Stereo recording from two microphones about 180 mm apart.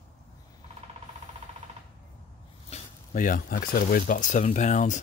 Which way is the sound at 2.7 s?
45° left (ahead or behind).